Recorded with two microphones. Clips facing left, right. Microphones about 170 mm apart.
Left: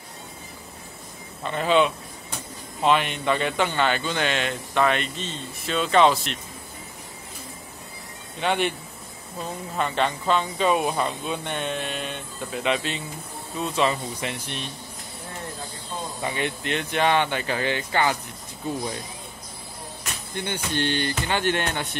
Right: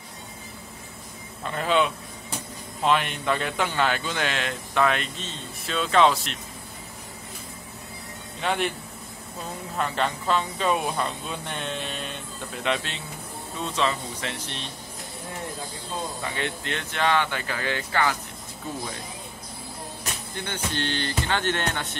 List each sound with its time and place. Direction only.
1.4 s speech: centre (ahead or behind)
8.4 s speech: centre (ahead or behind)
9.8 s speech: centre (ahead or behind)
16.2 s speech: 15° left (ahead or behind)
20.4 s speech: 15° left (ahead or behind)